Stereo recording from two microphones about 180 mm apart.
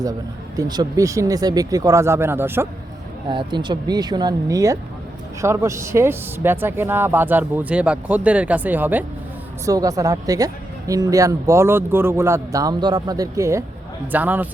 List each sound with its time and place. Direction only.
0.0 s speech: 20° right (ahead or behind)
3.2 s a woman's voice: 25° right (ahead or behind); by 14.4 s 10° right (ahead or behind)